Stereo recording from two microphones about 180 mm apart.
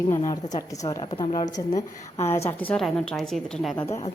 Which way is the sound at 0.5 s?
20° left (ahead or behind).